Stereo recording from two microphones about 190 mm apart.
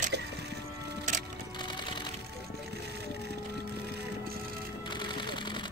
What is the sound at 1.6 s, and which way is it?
Music, 25° left (ahead or behind).